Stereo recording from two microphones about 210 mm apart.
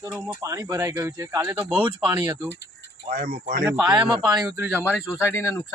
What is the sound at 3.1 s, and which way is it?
Speech, 35° right (ahead or behind).